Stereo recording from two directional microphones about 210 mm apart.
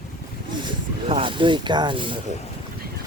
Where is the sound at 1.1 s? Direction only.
25° right (ahead or behind).